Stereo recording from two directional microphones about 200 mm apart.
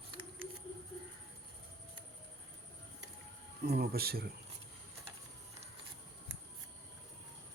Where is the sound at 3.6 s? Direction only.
55° right (ahead or behind).